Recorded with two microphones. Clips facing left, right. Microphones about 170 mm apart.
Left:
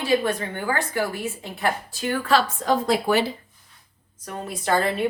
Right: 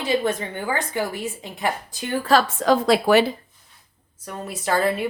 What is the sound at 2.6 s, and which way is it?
Speech, 90° right.